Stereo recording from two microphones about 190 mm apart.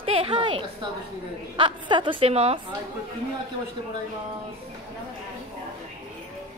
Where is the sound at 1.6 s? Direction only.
25° right (ahead or behind).